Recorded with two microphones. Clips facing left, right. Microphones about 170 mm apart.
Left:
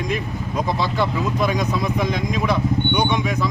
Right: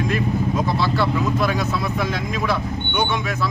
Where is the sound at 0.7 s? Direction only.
15° left (ahead or behind).